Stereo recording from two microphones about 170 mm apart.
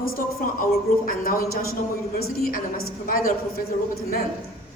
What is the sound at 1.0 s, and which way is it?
A woman's voice, 55° left (ahead or behind).